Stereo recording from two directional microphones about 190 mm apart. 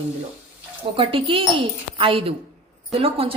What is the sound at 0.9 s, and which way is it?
A woman's voice, 30° right (ahead or behind).